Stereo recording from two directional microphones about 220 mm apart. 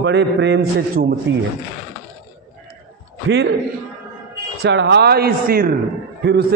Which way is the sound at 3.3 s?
50° right (ahead or behind).